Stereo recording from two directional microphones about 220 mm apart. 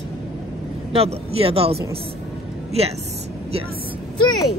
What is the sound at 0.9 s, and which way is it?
Speech, 25° right (ahead or behind).